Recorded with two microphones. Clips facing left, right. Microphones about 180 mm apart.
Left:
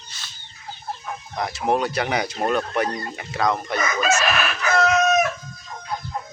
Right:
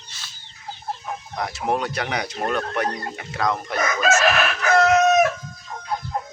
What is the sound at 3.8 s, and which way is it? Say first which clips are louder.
Crowing: right 3 dB; 70° right (ahead or behind).